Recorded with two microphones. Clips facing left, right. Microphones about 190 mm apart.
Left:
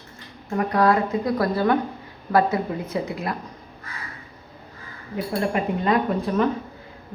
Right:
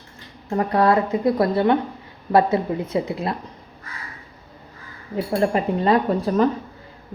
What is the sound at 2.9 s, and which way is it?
Speech, 25° right (ahead or behind).